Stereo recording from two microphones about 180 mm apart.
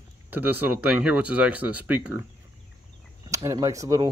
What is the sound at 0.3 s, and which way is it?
Speech, 10° right (ahead or behind).